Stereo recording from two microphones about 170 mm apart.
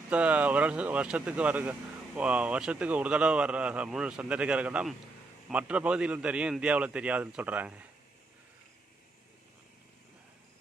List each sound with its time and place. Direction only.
0.1 s speech: 10° right (ahead or behind)